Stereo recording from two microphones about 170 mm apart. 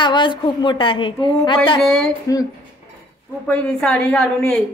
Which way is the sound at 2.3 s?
20° left (ahead or behind).